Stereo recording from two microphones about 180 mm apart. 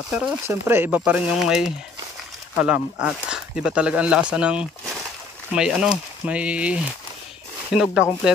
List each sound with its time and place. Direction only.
0.5 s speech: 15° right (ahead or behind)